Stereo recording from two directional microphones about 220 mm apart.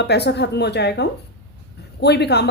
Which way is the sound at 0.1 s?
50° left (ahead or behind).